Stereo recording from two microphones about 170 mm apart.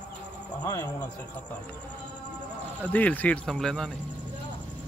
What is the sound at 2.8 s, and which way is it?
Speech, 10° left (ahead or behind).